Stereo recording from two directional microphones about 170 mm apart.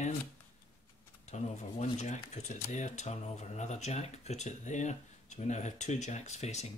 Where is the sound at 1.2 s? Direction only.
40° left (ahead or behind).